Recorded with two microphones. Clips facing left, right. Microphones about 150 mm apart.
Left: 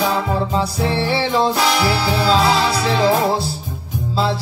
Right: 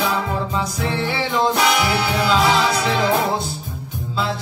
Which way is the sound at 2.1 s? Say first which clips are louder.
Left 1 dB; 30° left (ahead or behind).